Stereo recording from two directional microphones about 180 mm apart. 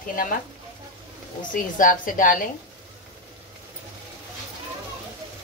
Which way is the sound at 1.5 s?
50° left (ahead or behind).